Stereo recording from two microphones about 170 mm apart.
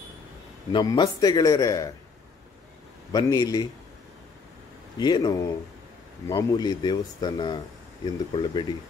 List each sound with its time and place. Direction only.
0.7 s speech: 25° left (ahead or behind)
3.1 s speech: 25° left (ahead or behind)
4.9 s speech: 25° left (ahead or behind)